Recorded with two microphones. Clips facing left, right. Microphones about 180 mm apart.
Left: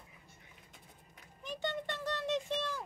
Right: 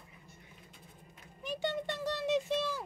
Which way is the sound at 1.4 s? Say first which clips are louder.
Right 3 dB; 10° right (ahead or behind).